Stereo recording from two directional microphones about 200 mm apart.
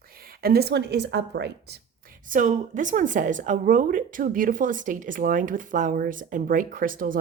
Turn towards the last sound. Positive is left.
turn(degrees=-45)  # may be behind; listen again after turning